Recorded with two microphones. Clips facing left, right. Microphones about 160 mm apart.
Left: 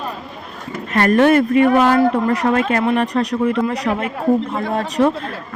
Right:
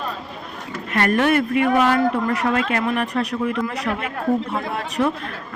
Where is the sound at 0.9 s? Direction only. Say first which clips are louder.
Left 5 dB; 35° left (ahead or behind).